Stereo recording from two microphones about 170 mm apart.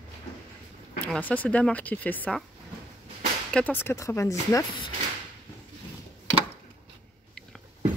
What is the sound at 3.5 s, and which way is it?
Speech, 10° left (ahead or behind).